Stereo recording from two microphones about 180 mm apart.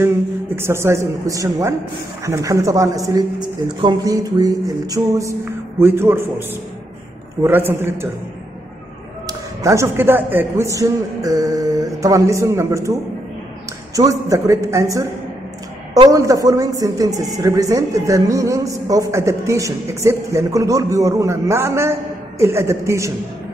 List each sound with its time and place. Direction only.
0.6 s a man's voice: 15° right (ahead or behind)
9.6 s a man's voice: 15° right (ahead or behind)
13.9 s a man's voice: 20° right (ahead or behind)